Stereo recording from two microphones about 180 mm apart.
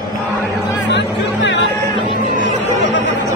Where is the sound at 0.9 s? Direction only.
75° left (ahead or behind).